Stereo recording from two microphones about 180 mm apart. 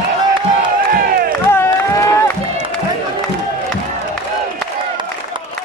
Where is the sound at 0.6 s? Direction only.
55° right (ahead or behind).